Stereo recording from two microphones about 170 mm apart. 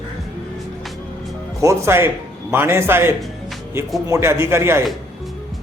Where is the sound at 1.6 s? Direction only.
15° right (ahead or behind).